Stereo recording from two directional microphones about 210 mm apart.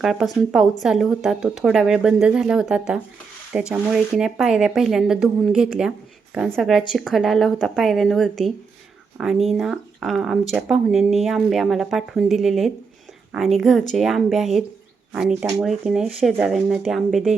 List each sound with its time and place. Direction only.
0.0 s speech: centre (ahead or behind)
15.4 s speech: 15° right (ahead or behind)
15.6 s speech: centre (ahead or behind)